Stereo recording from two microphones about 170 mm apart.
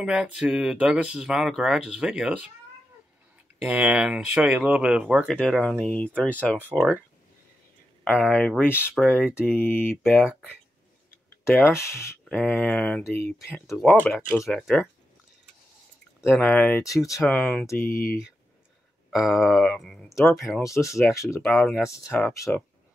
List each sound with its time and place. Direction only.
0.0 s speech: 5° right (ahead or behind)
3.6 s speech: 10° right (ahead or behind)
8.0 s speech: 5° left (ahead or behind)
10.0 s speech: 5° right (ahead or behind)
11.4 s speech: 15° left (ahead or behind)
16.3 s speech: 10° left (ahead or behind)
16.8 s speech: 20° left (ahead or behind)
17.3 s speech: 5° left (ahead or behind)
17.8 s speech: 60° left (ahead or behind)
19.0 s speech: centre (ahead or behind)
20.6 s speech: 15° left (ahead or behind)
21.4 s speech: centre (ahead or behind)